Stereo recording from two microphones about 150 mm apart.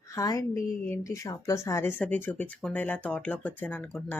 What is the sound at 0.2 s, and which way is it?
A woman's voice, 20° left (ahead or behind).